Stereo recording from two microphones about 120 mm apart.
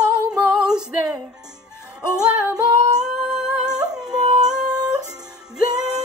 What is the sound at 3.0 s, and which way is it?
Humming, 5° right (ahead or behind).